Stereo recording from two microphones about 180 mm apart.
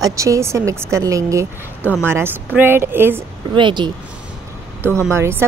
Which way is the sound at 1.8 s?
10° left (ahead or behind).